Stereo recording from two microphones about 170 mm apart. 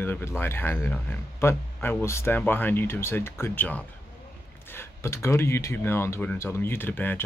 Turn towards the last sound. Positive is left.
turn(degrees=10)  # may be behind; listen again after turning